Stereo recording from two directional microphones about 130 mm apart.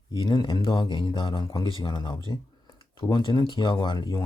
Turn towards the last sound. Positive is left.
turn(degrees=35)  # may be behind; listen again after turning